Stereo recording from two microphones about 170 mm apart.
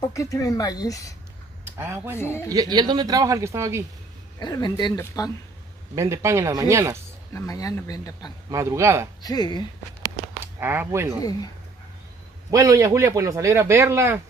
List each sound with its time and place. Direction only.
0.0 s speech: 20° left (ahead or behind)
1.6 s speech: 15° right (ahead or behind)
2.1 s a woman's voice: 15° left (ahead or behind)
2.5 s speech: 25° right (ahead or behind)
4.4 s speech: 25° left (ahead or behind)
5.9 s a man's voice: 15° right (ahead or behind)
7.3 s speech: 20° left (ahead or behind)
8.5 s a man's voice: 20° right (ahead or behind)
9.2 s speech: 25° left (ahead or behind)
10.4 s speech: 10° right (ahead or behind)
12.4 s a man's voice: 20° right (ahead or behind)